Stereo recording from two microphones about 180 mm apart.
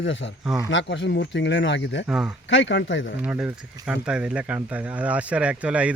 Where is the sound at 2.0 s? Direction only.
5° right (ahead or behind).